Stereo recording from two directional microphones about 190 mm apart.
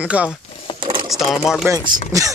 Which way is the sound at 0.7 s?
25° left (ahead or behind).